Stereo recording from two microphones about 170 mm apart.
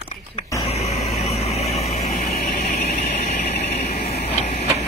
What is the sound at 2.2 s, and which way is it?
Vehicle, 60° left (ahead or behind).